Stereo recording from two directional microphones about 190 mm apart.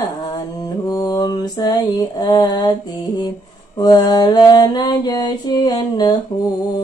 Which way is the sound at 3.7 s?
20° left (ahead or behind).